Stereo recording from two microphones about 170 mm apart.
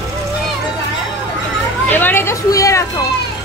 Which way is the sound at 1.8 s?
10° left (ahead or behind).